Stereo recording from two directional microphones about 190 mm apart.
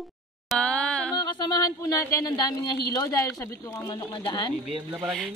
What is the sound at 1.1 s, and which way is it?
Speech, 25° left (ahead or behind).